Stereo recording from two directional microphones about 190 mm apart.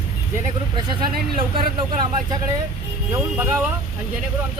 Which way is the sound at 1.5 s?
50° right (ahead or behind).